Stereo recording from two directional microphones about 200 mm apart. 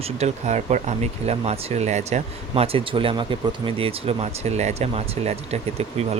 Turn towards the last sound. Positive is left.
turn(degrees=-30)  # may be behind; listen again after turning